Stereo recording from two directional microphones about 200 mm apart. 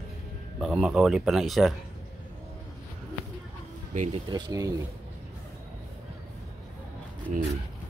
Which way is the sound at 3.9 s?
35° right (ahead or behind).